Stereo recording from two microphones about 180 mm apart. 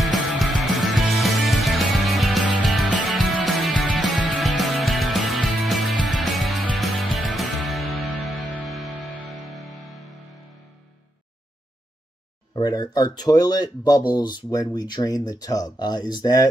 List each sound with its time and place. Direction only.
0.0 s music: centre (ahead or behind)
12.5 s speech: 20° left (ahead or behind)